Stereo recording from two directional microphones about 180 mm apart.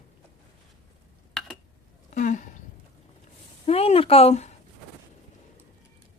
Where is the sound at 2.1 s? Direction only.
45° left (ahead or behind).